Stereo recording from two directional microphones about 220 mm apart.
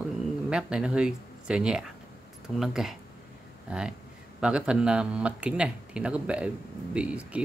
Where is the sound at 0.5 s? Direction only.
5° right (ahead or behind).